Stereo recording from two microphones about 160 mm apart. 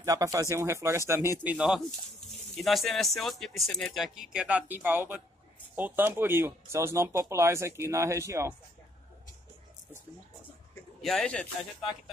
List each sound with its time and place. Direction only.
0.0 s speech: 20° right (ahead or behind)
11.0 s speech: centre (ahead or behind)